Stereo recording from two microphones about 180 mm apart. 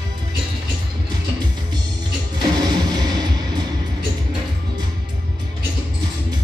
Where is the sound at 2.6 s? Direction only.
25° right (ahead or behind).